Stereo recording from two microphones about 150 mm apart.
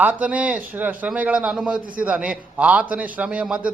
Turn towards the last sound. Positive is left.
turn(degrees=-10)  # may be behind; listen again after turning